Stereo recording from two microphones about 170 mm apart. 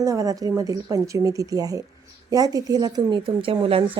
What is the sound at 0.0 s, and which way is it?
Speech, 20° right (ahead or behind).